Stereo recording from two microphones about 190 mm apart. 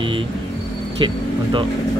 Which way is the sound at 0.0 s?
25° right (ahead or behind).